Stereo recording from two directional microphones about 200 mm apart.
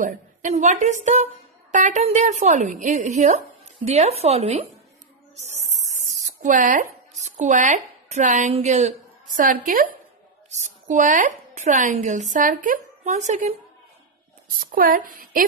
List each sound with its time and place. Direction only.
0.0 s speech: 40° right (ahead or behind)
5.3 s a sound: 35° right (ahead or behind)
5.9 s speech: 35° right (ahead or behind)
14.6 s a woman's voice: 45° right (ahead or behind)